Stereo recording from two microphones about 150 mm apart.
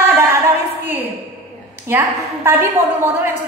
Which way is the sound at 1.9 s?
15° right (ahead or behind).